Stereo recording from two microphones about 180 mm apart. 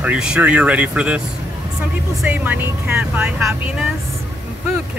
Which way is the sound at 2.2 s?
10° right (ahead or behind).